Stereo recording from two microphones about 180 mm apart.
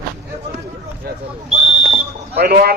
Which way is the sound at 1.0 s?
60° right (ahead or behind).